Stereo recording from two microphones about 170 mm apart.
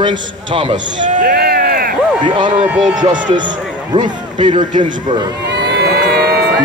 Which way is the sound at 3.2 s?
25° right (ahead or behind).